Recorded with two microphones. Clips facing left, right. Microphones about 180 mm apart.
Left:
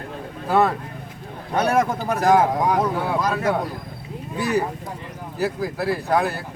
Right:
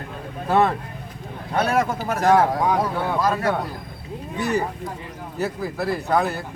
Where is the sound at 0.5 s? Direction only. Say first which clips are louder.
Even; centre (ahead or behind).